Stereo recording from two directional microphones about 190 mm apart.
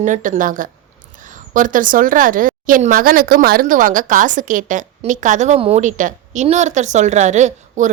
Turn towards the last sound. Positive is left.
turn(degrees=-40)  # may be behind; listen again after turning